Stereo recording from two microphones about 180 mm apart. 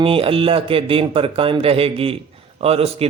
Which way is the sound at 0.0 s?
30° right (ahead or behind).